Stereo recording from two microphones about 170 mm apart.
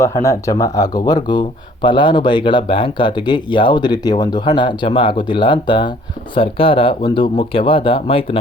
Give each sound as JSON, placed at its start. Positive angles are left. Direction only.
{"t": 0.0, "sound": "speech", "side_deg": 20}